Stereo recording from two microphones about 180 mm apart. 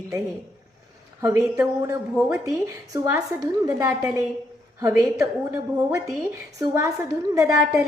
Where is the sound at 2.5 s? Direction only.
20° right (ahead or behind).